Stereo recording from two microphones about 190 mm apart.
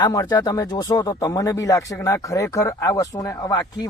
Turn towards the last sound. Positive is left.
turn(degrees=20)  # may be behind; listen again after turning